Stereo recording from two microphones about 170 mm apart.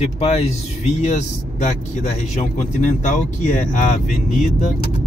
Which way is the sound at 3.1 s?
45° left (ahead or behind).